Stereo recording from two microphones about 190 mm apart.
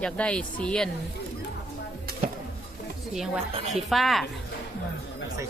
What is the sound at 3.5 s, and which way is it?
Speech, 35° right (ahead or behind).